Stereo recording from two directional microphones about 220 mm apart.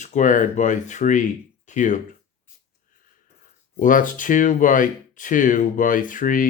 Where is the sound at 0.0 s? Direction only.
35° left (ahead or behind).